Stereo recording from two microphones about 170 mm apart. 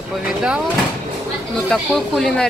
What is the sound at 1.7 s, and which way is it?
Speech, centre (ahead or behind).